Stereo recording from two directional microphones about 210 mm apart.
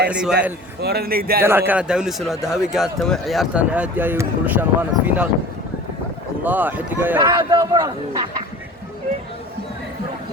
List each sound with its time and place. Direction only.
0.1 s a man's voice: 5° right (ahead or behind)
0.8 s a man's voice: 50° right (ahead or behind)
1.4 s a man's voice: 10° right (ahead or behind)
6.4 s speech: 10° right (ahead or behind)